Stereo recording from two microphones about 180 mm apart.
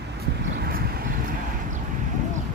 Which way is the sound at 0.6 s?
55° right (ahead or behind).